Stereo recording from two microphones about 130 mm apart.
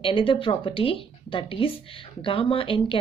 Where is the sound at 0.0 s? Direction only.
40° left (ahead or behind).